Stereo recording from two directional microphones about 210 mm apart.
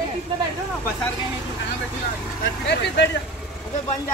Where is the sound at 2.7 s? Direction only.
55° left (ahead or behind).